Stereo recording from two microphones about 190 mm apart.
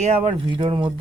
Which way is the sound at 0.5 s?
25° right (ahead or behind).